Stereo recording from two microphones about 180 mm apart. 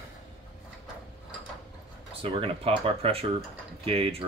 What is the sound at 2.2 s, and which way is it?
Speech, 30° right (ahead or behind).